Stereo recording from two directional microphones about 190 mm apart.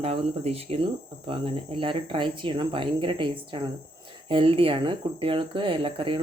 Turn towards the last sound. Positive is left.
turn(degrees=-30)  # may be behind; listen again after turning